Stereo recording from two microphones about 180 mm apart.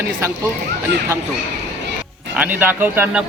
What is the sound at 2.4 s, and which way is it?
Speech, 10° right (ahead or behind).